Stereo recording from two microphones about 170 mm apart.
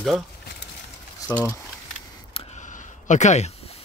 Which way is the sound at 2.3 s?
45° left (ahead or behind).